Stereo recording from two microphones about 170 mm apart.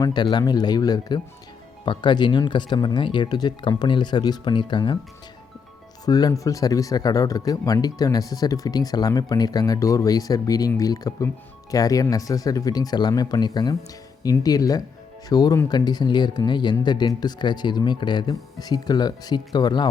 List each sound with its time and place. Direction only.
0.0 s speech: 25° left (ahead or behind)
6.1 s speech: 25° left (ahead or behind)